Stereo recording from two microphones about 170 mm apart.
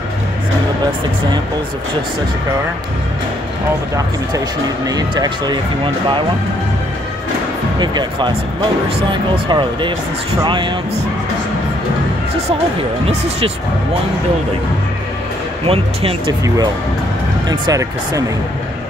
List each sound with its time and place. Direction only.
4.8 s speech: 25° right (ahead or behind)
7.8 s speech: 25° right (ahead or behind)
13.0 s speech: 35° right (ahead or behind)
15.6 s speech: 35° right (ahead or behind)
17.5 s speech: 20° right (ahead or behind)